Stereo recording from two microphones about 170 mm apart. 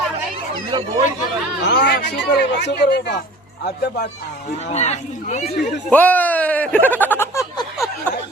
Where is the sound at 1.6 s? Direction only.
90° left; by 4.5 s 65° left (ahead or behind).